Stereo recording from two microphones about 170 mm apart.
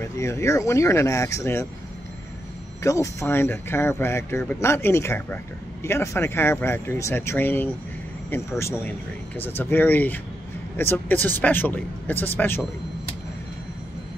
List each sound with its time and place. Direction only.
0.2 s speech: 15° left (ahead or behind)
2.8 s speech: 20° left (ahead or behind)